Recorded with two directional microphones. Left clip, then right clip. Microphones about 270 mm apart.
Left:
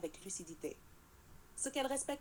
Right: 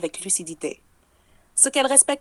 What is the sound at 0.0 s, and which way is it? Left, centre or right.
A woman's voice, right.